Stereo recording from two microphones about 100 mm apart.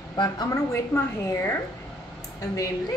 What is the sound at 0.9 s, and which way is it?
Speech, 25° left (ahead or behind).